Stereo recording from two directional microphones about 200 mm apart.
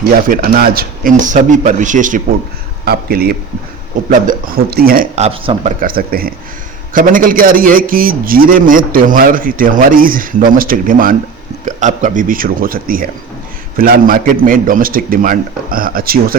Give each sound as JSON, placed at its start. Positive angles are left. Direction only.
{"t": 0.0, "sound": "speech", "side_deg": -45}
{"t": 2.8, "sound": "a man's voice", "side_deg": -50}
{"t": 5.1, "sound": "speech", "side_deg": -30}
{"t": 5.8, "sound": "a man's voice", "side_deg": -45}